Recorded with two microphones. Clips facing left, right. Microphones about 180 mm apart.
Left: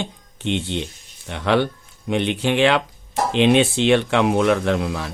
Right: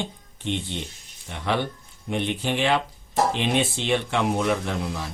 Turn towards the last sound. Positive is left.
turn(degrees=70)  # may be behind; listen again after turning